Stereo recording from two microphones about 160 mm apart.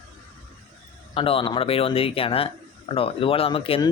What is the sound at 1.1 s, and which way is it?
Speech, 35° left (ahead or behind).